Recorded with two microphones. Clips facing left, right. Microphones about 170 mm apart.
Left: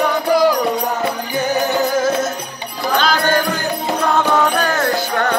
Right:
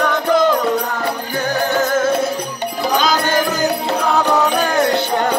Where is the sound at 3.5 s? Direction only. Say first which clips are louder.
Right 4 dB; 40° right (ahead or behind).